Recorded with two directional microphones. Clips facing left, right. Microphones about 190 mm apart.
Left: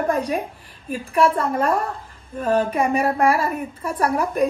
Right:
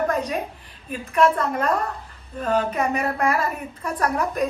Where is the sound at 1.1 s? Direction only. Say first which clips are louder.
Left 1 dB; 30° left (ahead or behind).